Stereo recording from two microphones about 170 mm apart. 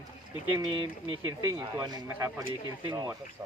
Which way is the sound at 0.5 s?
25° right (ahead or behind).